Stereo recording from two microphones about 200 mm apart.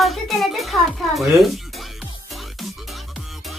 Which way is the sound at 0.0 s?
Centre (ahead or behind).